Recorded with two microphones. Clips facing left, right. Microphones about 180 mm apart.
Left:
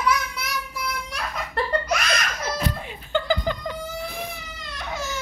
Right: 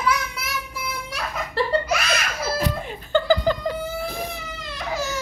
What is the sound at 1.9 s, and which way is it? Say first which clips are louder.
Belly laugh: right 1 dB; 5° right (ahead or behind).